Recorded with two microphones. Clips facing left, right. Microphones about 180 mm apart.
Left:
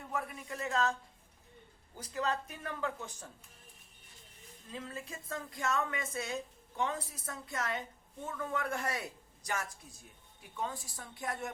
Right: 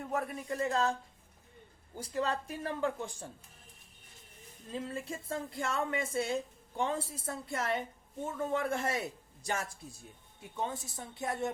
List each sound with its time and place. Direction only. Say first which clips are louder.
0.1 s speech: right 4 dB; 45° right (ahead or behind)
2.0 s a woman's voice: right 2 dB; 30° right (ahead or behind)
4.7 s a woman's voice: right 5 dB; 30° right (ahead or behind)